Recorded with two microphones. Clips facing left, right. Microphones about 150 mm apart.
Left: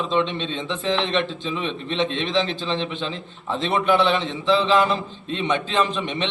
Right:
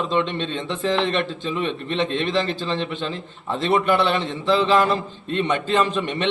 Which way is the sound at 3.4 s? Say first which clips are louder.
Right 1 dB; centre (ahead or behind).